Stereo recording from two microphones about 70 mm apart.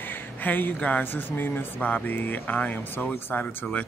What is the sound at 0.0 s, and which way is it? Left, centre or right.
Speech, left.